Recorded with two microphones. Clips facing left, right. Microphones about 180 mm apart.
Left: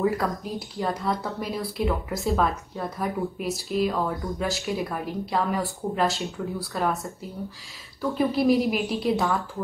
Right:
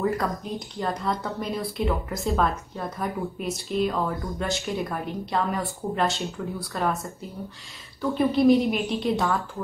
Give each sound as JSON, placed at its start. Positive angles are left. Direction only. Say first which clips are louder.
{"t": 0.0, "sound": "speech", "louder": "left 1 dB", "side_deg": 0}
{"t": 8.0, "sound": "speech", "louder": "right 2 dB", "side_deg": 0}